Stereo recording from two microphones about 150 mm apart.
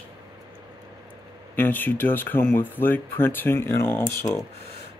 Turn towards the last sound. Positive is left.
turn(degrees=15)  # may be behind; listen again after turning